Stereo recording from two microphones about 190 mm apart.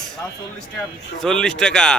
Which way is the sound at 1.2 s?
5° left (ahead or behind).